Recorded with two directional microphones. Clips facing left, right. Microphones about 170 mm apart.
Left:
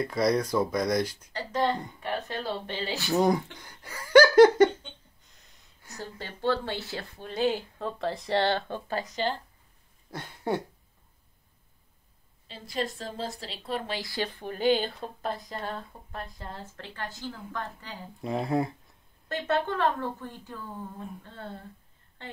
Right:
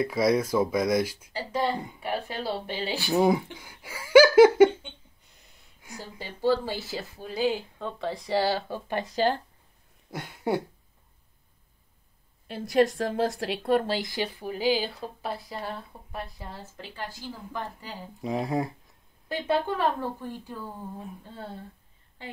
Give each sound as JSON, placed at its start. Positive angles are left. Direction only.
{"t": 0.0, "sound": "speech", "side_deg": -5}
{"t": 10.1, "sound": "speech", "side_deg": -10}
{"t": 12.4, "sound": "a woman's voice", "side_deg": -65}
{"t": 13.8, "sound": "speech", "side_deg": -20}
{"t": 18.2, "sound": "speech", "side_deg": 0}